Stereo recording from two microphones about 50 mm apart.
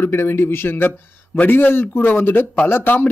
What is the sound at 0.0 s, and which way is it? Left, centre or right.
A man's voice, left.